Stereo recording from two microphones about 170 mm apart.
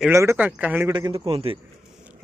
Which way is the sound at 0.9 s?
25° right (ahead or behind).